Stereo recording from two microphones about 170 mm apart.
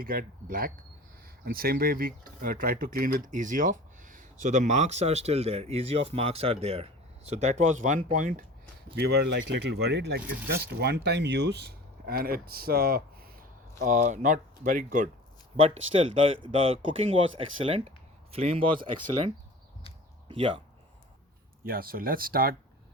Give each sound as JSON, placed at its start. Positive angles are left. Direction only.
{"t": 0.0, "sound": "speech", "side_deg": -60}
{"t": 9.0, "sound": "speech", "side_deg": -75}
{"t": 13.7, "sound": "speech", "side_deg": -50}
{"t": 15.5, "sound": "speech", "side_deg": -35}
{"t": 20.2, "sound": "speech", "side_deg": -30}
{"t": 21.6, "sound": "speech", "side_deg": -60}